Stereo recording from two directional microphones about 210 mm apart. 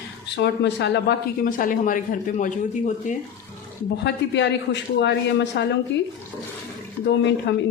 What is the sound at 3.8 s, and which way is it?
A man's voice, 55° left (ahead or behind).